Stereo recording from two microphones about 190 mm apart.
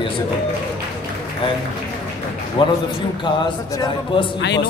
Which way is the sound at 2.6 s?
25° left (ahead or behind).